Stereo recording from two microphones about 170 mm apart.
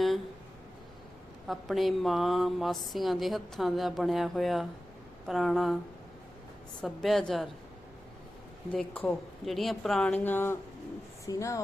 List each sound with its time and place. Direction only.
1.5 s speech: centre (ahead or behind)
6.8 s speech: centre (ahead or behind)
8.7 s speech: 5° left (ahead or behind)